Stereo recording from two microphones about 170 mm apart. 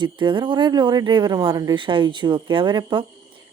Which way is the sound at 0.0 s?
30° right (ahead or behind).